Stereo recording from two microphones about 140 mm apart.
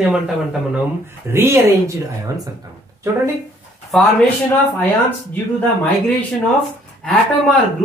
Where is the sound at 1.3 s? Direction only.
20° right (ahead or behind).